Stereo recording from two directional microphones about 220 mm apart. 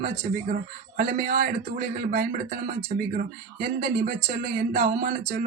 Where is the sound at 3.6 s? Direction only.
40° right (ahead or behind).